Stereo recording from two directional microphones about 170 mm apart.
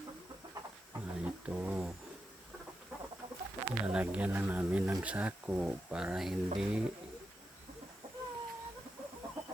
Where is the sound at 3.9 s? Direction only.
5° right (ahead or behind).